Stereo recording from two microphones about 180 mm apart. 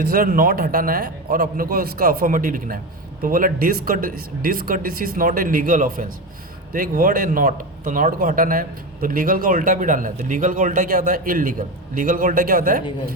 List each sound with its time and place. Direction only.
0.1 s a man's voice: 50° right (ahead or behind)